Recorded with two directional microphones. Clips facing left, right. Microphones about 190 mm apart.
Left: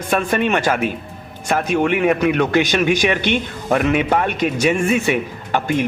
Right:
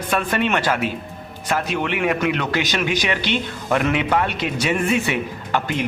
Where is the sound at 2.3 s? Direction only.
50° left (ahead or behind).